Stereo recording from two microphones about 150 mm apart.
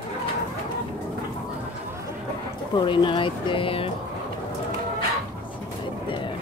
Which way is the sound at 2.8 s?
35° left (ahead or behind).